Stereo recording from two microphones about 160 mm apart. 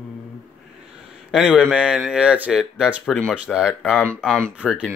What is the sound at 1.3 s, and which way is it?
Speech, 5° right (ahead or behind).